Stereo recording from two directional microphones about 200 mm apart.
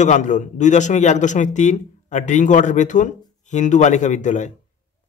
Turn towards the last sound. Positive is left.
turn(degrees=35)  # may be behind; listen again after turning